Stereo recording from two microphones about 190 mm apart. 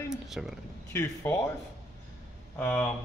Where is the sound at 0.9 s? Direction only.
15° left (ahead or behind).